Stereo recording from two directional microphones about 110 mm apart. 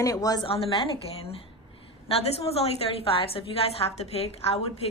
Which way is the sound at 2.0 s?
65° left (ahead or behind).